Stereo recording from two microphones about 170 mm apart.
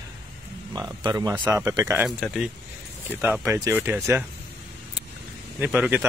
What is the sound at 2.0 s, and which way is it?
Speech, centre (ahead or behind).